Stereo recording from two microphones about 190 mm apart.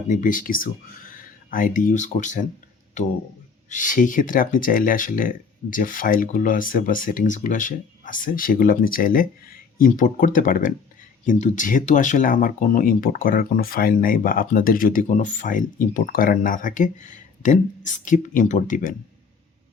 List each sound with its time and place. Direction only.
0.1 s speech: 45° left (ahead or behind)
3.7 s speech: 45° left (ahead or behind)